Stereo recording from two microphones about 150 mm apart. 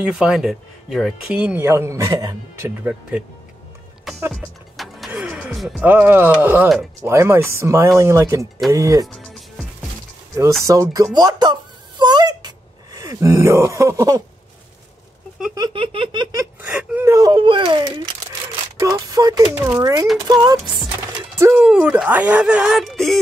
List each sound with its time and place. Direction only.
0.0 s speech: 5° right (ahead or behind)
4.3 s music: centre (ahead or behind)
5.9 s speech: 15° right (ahead or behind)
9.0 s music: centre (ahead or behind)
10.6 s speech: 20° right (ahead or behind)
12.0 s a sound: 30° right (ahead or behind)
15.5 s giggle: 30° right (ahead or behind)
16.6 s speech: 10° right (ahead or behind)
17.3 s giggle: 30° right (ahead or behind)
18.8 s speech: 20° right (ahead or behind)
21.4 s speech: 10° right (ahead or behind)